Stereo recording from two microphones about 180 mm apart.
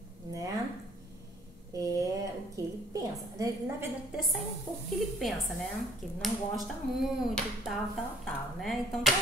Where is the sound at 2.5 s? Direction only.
20° right (ahead or behind).